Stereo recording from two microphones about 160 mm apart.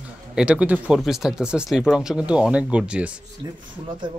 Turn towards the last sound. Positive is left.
turn(degrees=-30)  # may be behind; listen again after turning